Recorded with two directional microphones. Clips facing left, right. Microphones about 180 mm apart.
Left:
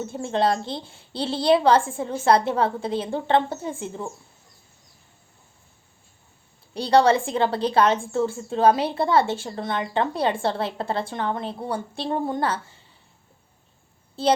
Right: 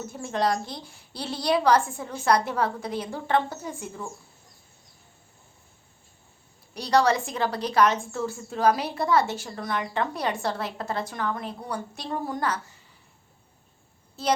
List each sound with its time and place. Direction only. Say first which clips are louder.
0.0 s a woman's voice: left 4 dB; 30° left (ahead or behind)
6.7 s a woman's voice: left 4 dB; 30° left (ahead or behind)
14.2 s a woman's voice: left 5 dB; 30° left (ahead or behind)